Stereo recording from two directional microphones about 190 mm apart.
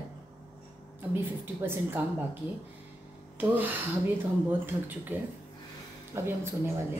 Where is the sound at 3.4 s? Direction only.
10° right (ahead or behind).